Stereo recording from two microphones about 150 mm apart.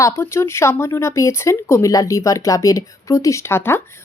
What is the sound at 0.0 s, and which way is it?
Speech, 20° left (ahead or behind).